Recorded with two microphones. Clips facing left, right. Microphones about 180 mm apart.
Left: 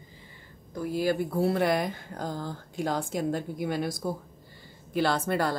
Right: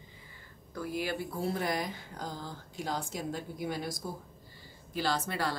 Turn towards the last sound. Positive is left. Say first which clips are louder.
# left 6 dB
turn(degrees=50)  # may be behind; listen again after turning